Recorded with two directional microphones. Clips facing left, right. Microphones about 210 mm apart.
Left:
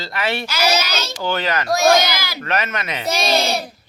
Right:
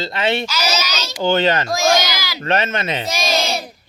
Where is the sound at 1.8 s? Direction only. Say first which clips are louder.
Left 2 dB; 55° left (ahead or behind).